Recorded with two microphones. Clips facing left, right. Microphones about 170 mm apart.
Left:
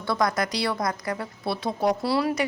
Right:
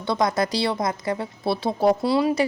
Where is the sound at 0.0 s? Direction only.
20° right (ahead or behind).